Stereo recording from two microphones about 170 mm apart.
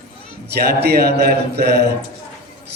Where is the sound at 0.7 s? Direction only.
70° right (ahead or behind).